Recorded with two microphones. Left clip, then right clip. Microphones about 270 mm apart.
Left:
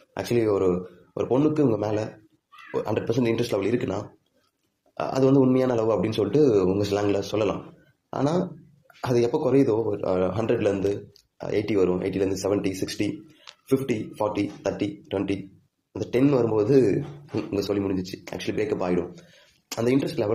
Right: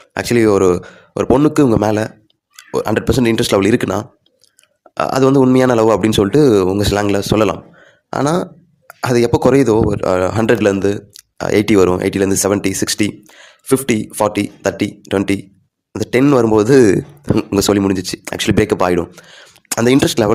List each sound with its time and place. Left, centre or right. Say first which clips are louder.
0.1 s speech: right 11 dB; right